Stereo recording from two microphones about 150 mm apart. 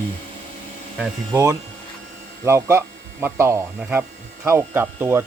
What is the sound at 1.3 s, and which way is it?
Speech, 20° right (ahead or behind).